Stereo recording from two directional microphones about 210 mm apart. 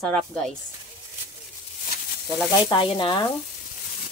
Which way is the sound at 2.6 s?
25° left (ahead or behind).